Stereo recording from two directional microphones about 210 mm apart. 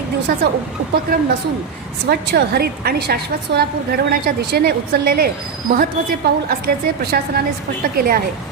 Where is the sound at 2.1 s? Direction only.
50° right (ahead or behind).